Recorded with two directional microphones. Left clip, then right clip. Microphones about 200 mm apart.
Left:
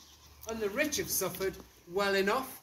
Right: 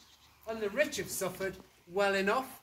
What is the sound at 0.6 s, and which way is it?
Speech, 15° right (ahead or behind).